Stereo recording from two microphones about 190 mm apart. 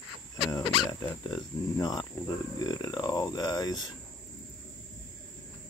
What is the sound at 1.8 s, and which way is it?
Speech, 20° left (ahead or behind).